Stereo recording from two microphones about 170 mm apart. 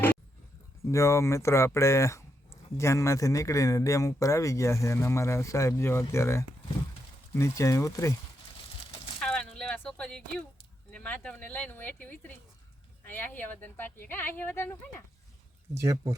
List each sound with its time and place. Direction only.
0.9 s speech: 15° left (ahead or behind)
9.2 s a sound: 5° left (ahead or behind)
10.9 s speech: 5° left (ahead or behind)
15.7 s speech: 20° right (ahead or behind)